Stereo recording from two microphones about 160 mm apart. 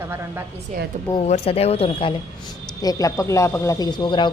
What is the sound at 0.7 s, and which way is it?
Speech, 50° right (ahead or behind).